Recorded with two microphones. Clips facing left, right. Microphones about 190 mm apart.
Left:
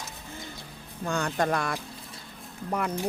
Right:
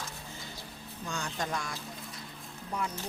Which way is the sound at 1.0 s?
60° left (ahead or behind).